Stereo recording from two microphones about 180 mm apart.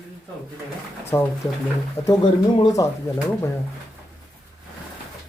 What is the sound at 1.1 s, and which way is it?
Speech, 25° left (ahead or behind).